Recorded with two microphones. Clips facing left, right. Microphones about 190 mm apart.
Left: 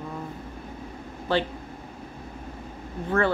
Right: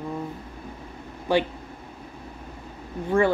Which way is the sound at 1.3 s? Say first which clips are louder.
Right 3 dB; 15° right (ahead or behind).